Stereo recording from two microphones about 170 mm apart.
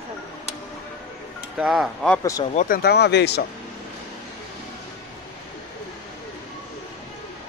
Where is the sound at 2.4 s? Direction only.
40° left (ahead or behind).